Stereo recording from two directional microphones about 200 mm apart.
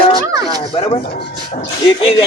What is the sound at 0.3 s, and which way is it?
Speech, 15° right (ahead or behind).